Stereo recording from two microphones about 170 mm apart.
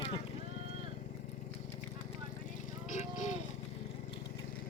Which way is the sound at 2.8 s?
45° left (ahead or behind).